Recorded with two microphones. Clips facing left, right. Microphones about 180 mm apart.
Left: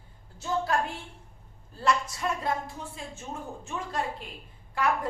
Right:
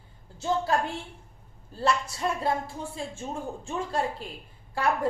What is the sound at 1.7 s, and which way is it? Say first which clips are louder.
Speech: right 1 dB; 30° right (ahead or behind).